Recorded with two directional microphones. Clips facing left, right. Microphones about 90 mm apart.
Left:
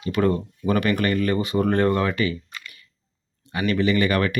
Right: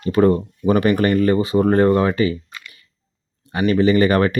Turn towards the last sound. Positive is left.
turn(degrees=-35)  # may be behind; listen again after turning